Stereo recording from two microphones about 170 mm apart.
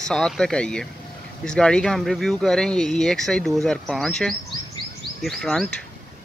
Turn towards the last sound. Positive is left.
turn(degrees=5)  # may be behind; listen again after turning